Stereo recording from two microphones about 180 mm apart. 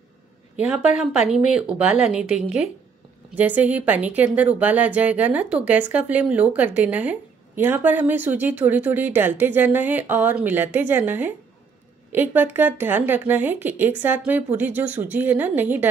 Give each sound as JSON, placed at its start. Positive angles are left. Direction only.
{"t": 1.3, "sound": "a woman's voice", "side_deg": -5}